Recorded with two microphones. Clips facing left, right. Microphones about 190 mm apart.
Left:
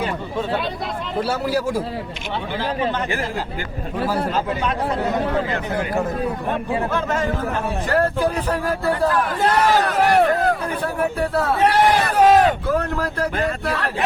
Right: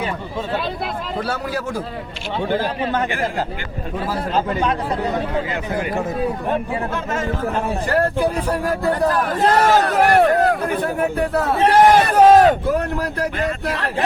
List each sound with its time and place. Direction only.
1.2 s a man's voice: 5° left (ahead or behind)
2.5 s a man's voice: 45° right (ahead or behind)
7.9 s speech: 10° right (ahead or behind)
8.9 s a man's voice: 40° right (ahead or behind)
11.7 s speech: 45° right (ahead or behind)
12.6 s speech: 15° right (ahead or behind)